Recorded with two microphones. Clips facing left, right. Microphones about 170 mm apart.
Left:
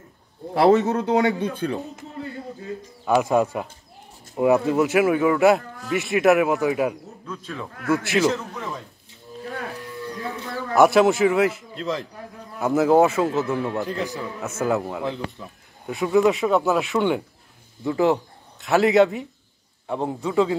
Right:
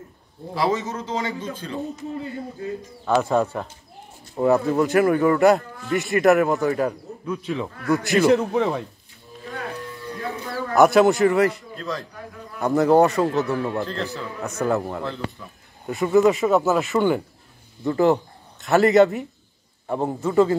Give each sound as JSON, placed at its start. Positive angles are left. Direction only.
{"t": 0.6, "sound": "speech", "side_deg": 65}
{"t": 3.1, "sound": "speech", "side_deg": 10}
{"t": 7.2, "sound": "speech", "side_deg": -15}
{"t": 8.0, "sound": "speech", "side_deg": 0}
{"t": 8.3, "sound": "speech", "side_deg": -65}
{"t": 10.7, "sound": "speech", "side_deg": 0}
{"t": 11.7, "sound": "a man's voice", "side_deg": 20}
{"t": 12.5, "sound": "speech", "side_deg": 5}
{"t": 13.7, "sound": "speech", "side_deg": 15}
{"t": 14.6, "sound": "speech", "side_deg": 0}
{"t": 15.0, "sound": "speech", "side_deg": 15}
{"t": 15.9, "sound": "speech", "side_deg": 0}